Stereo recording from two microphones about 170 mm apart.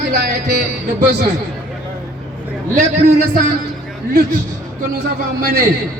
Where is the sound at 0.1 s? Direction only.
80° right.